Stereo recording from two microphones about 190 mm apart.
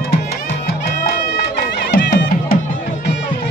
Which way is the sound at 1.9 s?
60° left (ahead or behind).